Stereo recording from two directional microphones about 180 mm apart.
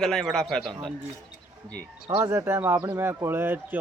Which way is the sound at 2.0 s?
15° right (ahead or behind).